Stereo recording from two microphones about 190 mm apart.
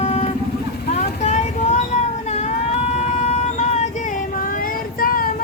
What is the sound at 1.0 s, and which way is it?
Vehicle, 40° left (ahead or behind).